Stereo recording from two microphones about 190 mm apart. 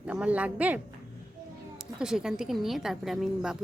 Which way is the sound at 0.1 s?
5° right (ahead or behind).